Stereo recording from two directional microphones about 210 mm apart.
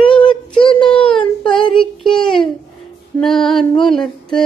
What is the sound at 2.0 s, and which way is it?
Child singing, centre (ahead or behind).